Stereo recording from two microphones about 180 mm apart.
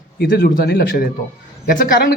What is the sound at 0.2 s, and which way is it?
Speech, 60° left (ahead or behind).